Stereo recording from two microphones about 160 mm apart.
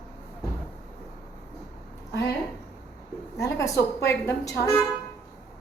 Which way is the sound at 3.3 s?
20° left (ahead or behind).